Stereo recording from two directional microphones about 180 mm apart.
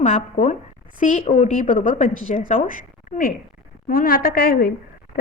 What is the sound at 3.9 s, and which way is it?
Speech, 55° left (ahead or behind).